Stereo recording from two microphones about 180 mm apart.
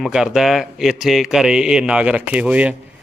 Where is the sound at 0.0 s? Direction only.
5° right (ahead or behind).